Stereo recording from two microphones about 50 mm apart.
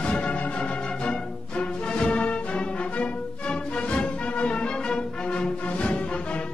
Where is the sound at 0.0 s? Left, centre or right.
Left.